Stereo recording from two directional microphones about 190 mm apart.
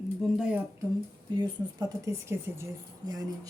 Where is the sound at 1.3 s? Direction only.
20° right (ahead or behind).